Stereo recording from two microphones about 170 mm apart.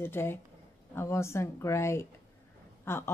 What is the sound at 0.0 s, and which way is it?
A woman's voice, 15° left (ahead or behind).